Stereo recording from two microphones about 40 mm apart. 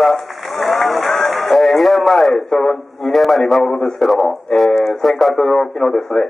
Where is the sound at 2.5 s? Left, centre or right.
Centre.